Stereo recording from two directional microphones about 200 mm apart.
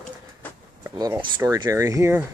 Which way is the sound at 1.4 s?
15° right (ahead or behind).